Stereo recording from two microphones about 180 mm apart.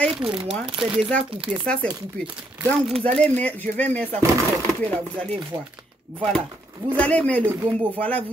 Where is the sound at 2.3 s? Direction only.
10° right (ahead or behind).